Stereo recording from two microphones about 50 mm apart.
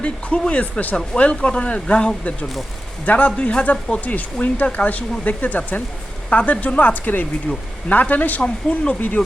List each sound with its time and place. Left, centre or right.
0.5 s speech: left
0.9 s speech: left
8.4 s speech: left
9.0 s speech: left